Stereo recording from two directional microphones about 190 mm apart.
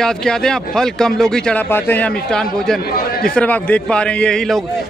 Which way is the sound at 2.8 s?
50° left (ahead or behind).